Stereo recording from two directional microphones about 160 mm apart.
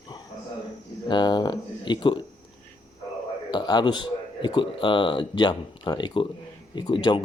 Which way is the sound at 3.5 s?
25° left (ahead or behind).